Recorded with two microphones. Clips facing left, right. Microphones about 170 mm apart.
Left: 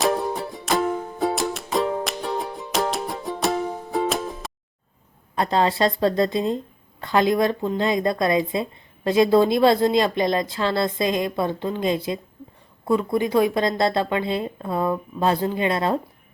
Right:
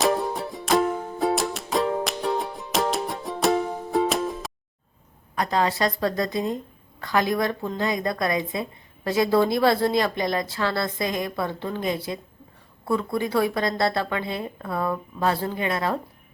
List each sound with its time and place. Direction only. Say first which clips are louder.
0.0 s music: left 1 dB; centre (ahead or behind)
5.3 s speech: left 3 dB; 25° left (ahead or behind)